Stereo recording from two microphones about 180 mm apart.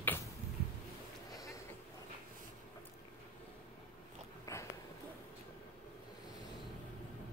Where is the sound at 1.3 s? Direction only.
20° left (ahead or behind).